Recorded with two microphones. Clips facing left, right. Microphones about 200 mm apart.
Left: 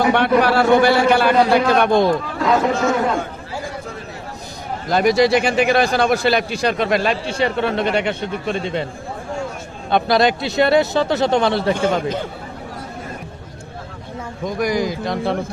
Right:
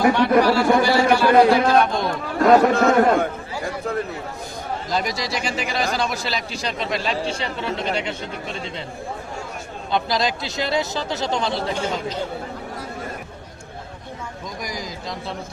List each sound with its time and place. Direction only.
0.1 s a sound: 60° left (ahead or behind)
1.8 s a man's voice: 60° left (ahead or behind)
2.4 s speech: 60° right (ahead or behind)
4.9 s a man's voice: 60° left (ahead or behind)
9.9 s a man's voice: 60° left (ahead or behind)
14.4 s a man's voice: 60° left (ahead or behind)